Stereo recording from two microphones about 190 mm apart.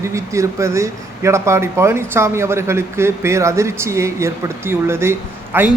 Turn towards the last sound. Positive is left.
turn(degrees=-10)  # may be behind; listen again after turning